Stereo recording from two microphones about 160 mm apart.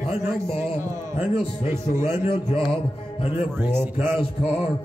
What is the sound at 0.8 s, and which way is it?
Speech, 15° right (ahead or behind).